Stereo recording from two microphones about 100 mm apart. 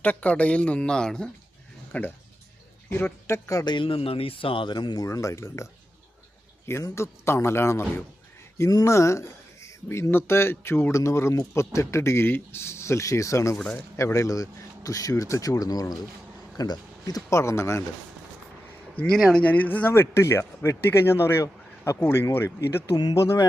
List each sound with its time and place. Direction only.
0.0 s speech: 15° left (ahead or behind)
1.9 s speech: 20° left (ahead or behind); by 3.8 s 35° left (ahead or behind)
3.8 s speech: 65° left (ahead or behind); by 5.0 s 45° left (ahead or behind)
5.0 s speech: 30° left (ahead or behind)
6.7 s speech: 25° left (ahead or behind)
13.6 s speech: 15° left (ahead or behind)
13.9 s speech: 30° left (ahead or behind)
19.1 s speech: 5° left (ahead or behind); by 23.5 s 30° left (ahead or behind)